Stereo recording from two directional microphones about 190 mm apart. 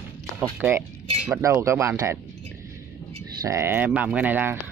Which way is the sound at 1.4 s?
15° right (ahead or behind).